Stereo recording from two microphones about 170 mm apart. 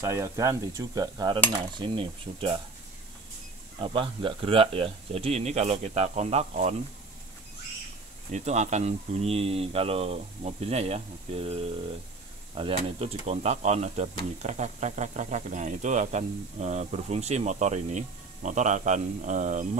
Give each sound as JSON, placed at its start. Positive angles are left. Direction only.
{"t": 0.0, "sound": "a sound", "side_deg": -15}
{"t": 3.8, "sound": "speech", "side_deg": -30}
{"t": 8.3, "sound": "speech", "side_deg": -40}